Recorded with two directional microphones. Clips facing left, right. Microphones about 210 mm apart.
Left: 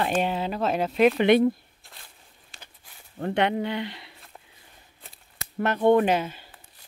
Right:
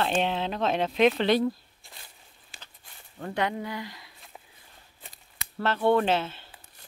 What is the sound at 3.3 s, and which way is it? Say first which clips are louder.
Speech: left 5 dB; 70° left (ahead or behind).